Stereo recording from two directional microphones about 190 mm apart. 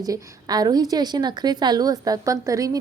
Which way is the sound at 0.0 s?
20° right (ahead or behind).